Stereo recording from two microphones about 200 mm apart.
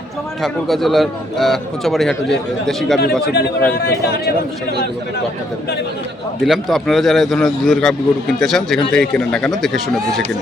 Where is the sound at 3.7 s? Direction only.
50° left (ahead or behind).